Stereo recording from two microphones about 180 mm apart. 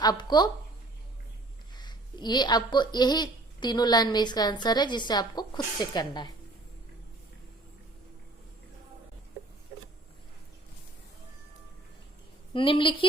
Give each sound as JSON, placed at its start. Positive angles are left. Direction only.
{"t": 0.0, "sound": "a woman's voice", "side_deg": 20}
{"t": 1.7, "sound": "a woman's voice", "side_deg": 25}
{"t": 12.5, "sound": "a woman's voice", "side_deg": 30}